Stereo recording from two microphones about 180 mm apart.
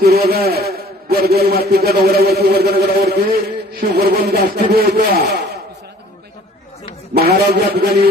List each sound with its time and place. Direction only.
0.0 s a man's voice: 60° right (ahead or behind)
7.1 s a man's voice: 60° right (ahead or behind)